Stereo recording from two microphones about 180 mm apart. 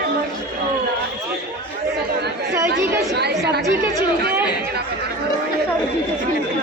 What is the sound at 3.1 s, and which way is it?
Chatter, 65° right (ahead or behind).